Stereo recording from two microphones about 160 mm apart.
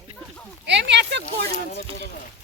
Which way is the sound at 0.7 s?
90° right.